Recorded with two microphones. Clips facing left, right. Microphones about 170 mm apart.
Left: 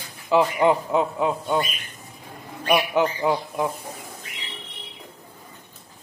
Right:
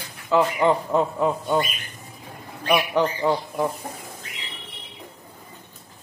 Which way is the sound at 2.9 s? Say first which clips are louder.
Even; 5° left (ahead or behind).